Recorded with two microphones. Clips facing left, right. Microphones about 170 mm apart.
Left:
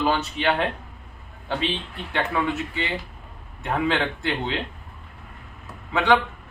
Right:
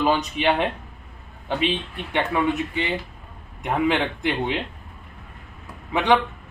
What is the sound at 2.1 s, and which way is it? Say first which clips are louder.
Speech: right 3 dB; 15° right (ahead or behind).